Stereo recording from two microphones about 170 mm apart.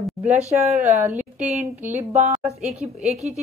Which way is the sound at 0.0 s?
10° right (ahead or behind).